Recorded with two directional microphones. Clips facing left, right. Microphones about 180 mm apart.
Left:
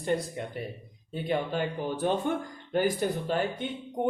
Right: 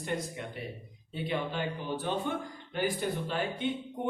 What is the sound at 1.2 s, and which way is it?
Speech, 45° left (ahead or behind).